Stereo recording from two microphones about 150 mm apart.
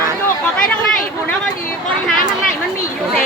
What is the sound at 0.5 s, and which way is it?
Speech, 5° left (ahead or behind).